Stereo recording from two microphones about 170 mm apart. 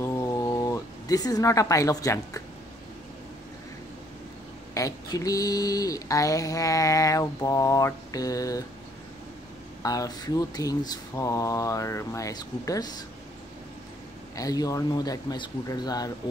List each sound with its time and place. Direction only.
0.0 s a sound: 20° left (ahead or behind)
4.7 s mantra: 20° left (ahead or behind)
9.8 s mantra: 20° left (ahead or behind)
14.3 s mantra: 20° left (ahead or behind)